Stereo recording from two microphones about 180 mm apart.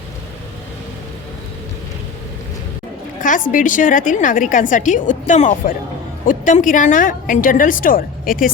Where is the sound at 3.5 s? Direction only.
45° left (ahead or behind).